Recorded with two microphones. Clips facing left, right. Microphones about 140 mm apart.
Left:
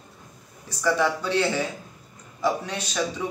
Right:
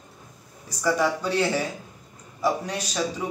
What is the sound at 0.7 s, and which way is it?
A man's voice, 10° right (ahead or behind).